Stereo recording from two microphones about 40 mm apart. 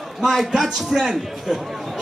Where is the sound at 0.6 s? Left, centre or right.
Centre.